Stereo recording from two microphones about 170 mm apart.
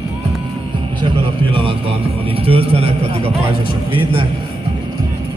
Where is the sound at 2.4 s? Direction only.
35° right (ahead or behind).